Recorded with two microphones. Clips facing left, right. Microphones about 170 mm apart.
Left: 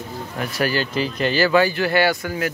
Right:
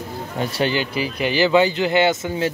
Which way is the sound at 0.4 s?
30° right (ahead or behind).